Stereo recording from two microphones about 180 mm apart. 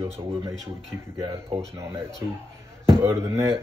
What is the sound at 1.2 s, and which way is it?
Speech, 15° right (ahead or behind).